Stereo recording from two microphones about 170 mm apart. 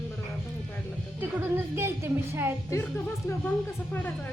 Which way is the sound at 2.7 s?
15° left (ahead or behind).